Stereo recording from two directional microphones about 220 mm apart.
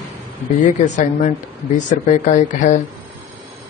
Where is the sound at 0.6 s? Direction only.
35° left (ahead or behind).